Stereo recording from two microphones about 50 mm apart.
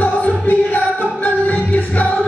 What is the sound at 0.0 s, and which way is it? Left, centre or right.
Music, left.